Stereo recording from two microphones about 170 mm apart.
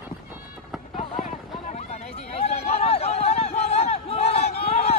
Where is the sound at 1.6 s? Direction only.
40° left (ahead or behind).